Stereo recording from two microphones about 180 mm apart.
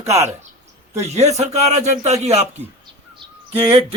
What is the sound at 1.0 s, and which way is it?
Speech, 40° right (ahead or behind).